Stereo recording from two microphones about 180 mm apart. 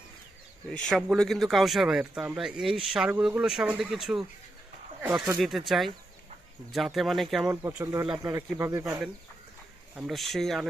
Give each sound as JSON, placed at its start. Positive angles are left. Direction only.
{"t": 0.7, "sound": "speech", "side_deg": 0}
{"t": 8.2, "sound": "speech", "side_deg": -15}
{"t": 9.9, "sound": "speech", "side_deg": 0}